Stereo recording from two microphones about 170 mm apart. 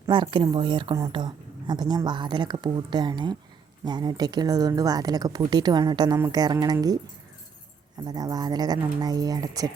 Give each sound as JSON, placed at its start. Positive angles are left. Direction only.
{"t": 0.1, "sound": "speech", "side_deg": -30}
{"t": 8.0, "sound": "speech", "side_deg": -25}